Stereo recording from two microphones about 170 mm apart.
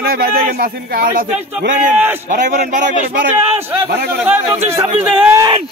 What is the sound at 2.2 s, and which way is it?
Speech, 45° right (ahead or behind).